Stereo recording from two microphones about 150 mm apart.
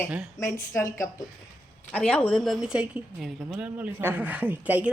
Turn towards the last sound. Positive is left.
turn(degrees=-10)  # may be behind; listen again after turning